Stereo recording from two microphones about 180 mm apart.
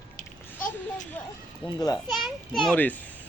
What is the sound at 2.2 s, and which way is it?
Speech, centre (ahead or behind).